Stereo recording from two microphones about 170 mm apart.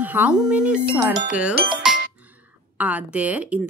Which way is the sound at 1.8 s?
5° right (ahead or behind).